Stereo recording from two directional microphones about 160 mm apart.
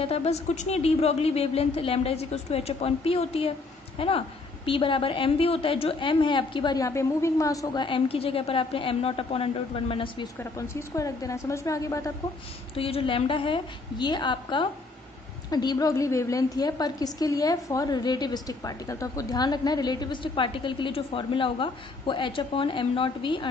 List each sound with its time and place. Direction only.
0.0 s a woman's voice: 40° left (ahead or behind)
10.4 s a woman's voice: 20° left (ahead or behind)
12.7 s a woman's voice: 35° left (ahead or behind)